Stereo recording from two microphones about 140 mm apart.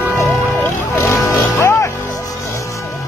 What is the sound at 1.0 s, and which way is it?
Music, 20° left (ahead or behind).